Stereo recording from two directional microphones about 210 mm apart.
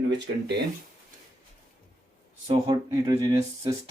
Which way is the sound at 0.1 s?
55° right (ahead or behind).